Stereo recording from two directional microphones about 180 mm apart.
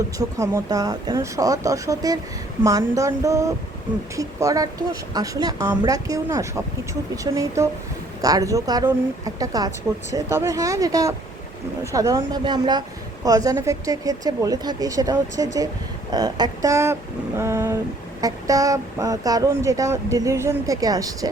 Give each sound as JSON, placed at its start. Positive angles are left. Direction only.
{"t": 0.2, "sound": "speech", "side_deg": -20}